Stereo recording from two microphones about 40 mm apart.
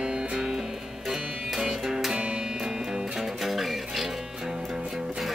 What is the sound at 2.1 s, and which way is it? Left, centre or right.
Music, right.